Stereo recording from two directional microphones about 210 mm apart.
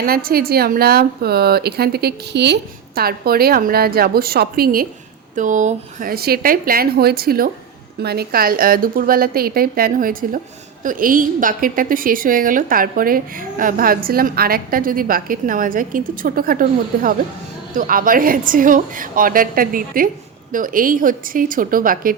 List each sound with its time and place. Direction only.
0.0 s a woman's voice: 45° right (ahead or behind)